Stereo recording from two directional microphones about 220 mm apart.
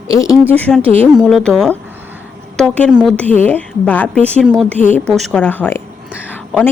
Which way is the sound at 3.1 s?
5° left (ahead or behind).